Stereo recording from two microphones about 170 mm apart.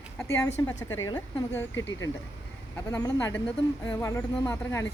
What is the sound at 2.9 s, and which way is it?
Speech, 15° left (ahead or behind).